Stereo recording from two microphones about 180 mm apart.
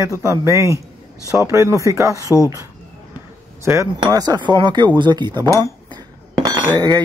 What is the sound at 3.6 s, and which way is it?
Speech, 15° right (ahead or behind).